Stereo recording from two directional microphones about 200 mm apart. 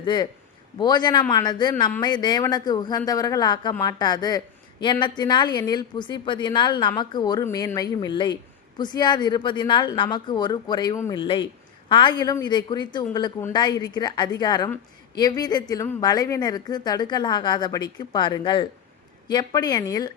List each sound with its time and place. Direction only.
0.0 s a man's voice: 20° left (ahead or behind)